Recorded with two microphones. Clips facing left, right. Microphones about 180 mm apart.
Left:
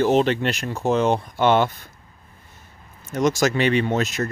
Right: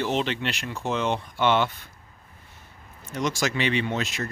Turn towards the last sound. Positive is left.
turn(degrees=45)  # may be behind; listen again after turning